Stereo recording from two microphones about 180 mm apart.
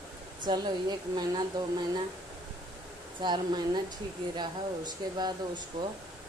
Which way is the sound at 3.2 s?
25° right (ahead or behind).